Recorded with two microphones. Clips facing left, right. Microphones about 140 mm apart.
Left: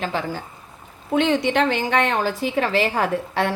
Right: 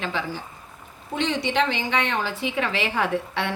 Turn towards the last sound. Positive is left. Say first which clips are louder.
# left 4 dB
turn(degrees=40)  # may be behind; listen again after turning